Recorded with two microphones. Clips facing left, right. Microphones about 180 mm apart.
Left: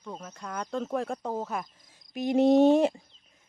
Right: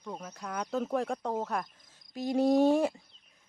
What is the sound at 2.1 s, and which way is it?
Speech, 20° left (ahead or behind).